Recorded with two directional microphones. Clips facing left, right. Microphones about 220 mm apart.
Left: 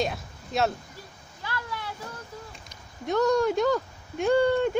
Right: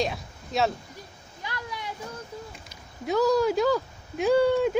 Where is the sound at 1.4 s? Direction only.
15° right (ahead or behind).